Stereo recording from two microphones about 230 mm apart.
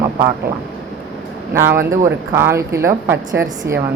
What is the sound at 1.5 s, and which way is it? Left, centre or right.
Speech, centre.